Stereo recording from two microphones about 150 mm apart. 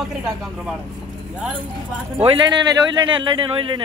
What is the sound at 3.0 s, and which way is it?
Speech, 35° right (ahead or behind).